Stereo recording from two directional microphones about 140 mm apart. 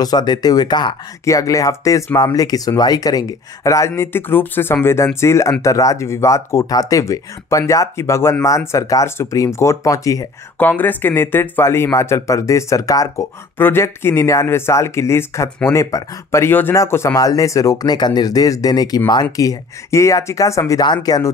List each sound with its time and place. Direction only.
0.0 s speech: 30° left (ahead or behind)
10.6 s speech: 10° left (ahead or behind); by 21.3 s 30° left (ahead or behind)